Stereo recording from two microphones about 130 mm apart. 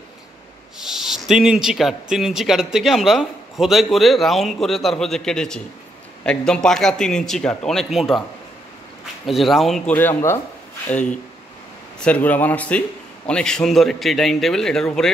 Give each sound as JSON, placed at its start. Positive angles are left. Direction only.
{"t": 0.7, "sound": "speech", "side_deg": -5}
{"t": 9.2, "sound": "speech", "side_deg": 0}
{"t": 9.9, "sound": "a man's voice", "side_deg": 20}
{"t": 12.0, "sound": "a man's voice", "side_deg": 10}